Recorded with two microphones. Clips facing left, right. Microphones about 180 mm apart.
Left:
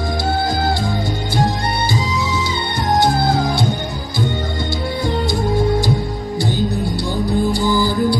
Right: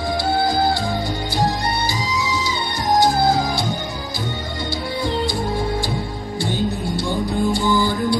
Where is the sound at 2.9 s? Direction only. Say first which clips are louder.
Even; 60° left (ahead or behind).